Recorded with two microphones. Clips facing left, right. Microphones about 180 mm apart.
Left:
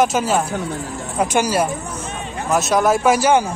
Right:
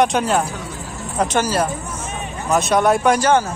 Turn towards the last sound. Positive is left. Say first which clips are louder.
# left 1 dB
turn(degrees=10)  # may be behind; listen again after turning